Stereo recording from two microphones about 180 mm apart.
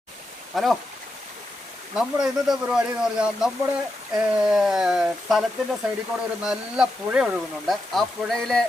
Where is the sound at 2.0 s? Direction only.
5° right (ahead or behind).